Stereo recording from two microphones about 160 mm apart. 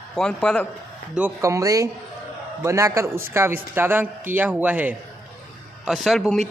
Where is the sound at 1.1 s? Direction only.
15° right (ahead or behind).